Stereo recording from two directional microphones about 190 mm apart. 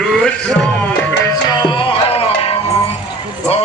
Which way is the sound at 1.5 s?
25° left (ahead or behind).